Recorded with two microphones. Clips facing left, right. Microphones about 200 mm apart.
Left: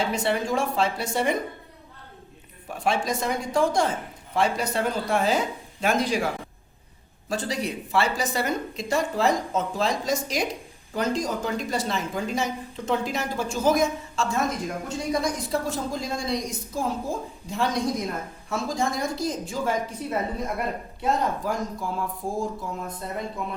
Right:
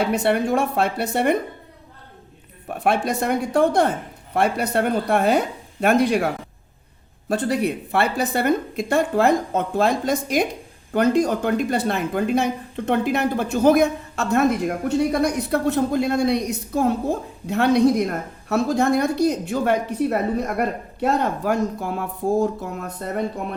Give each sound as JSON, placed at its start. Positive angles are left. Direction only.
{"t": 0.0, "sound": "speech", "side_deg": -60}
{"t": 2.6, "sound": "speech", "side_deg": -60}